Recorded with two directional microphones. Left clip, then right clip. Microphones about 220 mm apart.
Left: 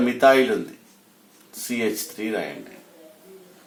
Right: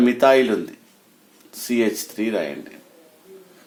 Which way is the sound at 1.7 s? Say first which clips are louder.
Right 4 dB; 50° right (ahead or behind).